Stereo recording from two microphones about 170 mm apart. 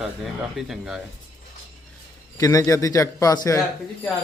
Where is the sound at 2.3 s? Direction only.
20° left (ahead or behind).